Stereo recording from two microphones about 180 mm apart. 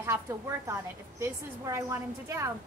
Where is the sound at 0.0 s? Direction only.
15° right (ahead or behind).